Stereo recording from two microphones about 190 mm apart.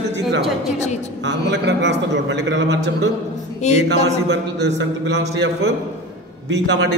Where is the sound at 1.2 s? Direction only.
65° right (ahead or behind).